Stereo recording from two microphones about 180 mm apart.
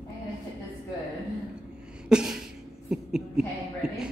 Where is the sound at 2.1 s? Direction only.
5° right (ahead or behind).